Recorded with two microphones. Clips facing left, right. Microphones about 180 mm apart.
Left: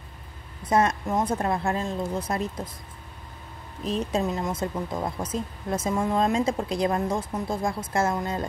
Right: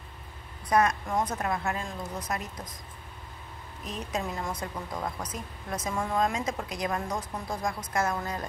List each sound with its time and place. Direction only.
0.7 s speech: 25° left (ahead or behind)
3.8 s speech: 30° left (ahead or behind)